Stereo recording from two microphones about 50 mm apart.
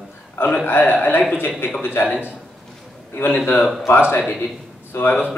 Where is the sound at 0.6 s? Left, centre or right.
Left.